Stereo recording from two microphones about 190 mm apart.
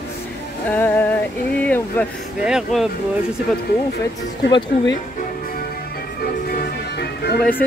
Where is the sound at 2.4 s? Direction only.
Centre (ahead or behind).